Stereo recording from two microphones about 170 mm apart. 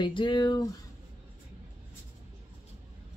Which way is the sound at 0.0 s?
30° left (ahead or behind).